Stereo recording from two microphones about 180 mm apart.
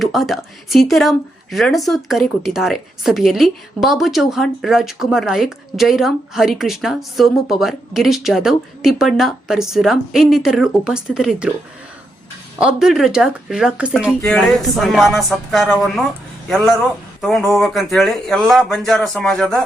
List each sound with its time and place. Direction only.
0.0 s speech: centre (ahead or behind)
12.5 s a man's voice: 5° right (ahead or behind)